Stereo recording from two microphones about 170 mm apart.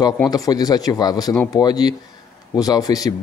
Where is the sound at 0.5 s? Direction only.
20° left (ahead or behind).